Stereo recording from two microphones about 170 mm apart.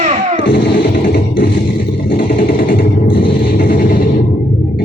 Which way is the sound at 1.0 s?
60° left (ahead or behind).